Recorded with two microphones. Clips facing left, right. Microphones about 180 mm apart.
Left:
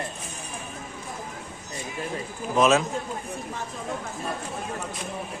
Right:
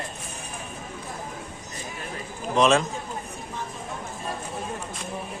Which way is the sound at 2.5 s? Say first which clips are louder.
Even; 5° left (ahead or behind).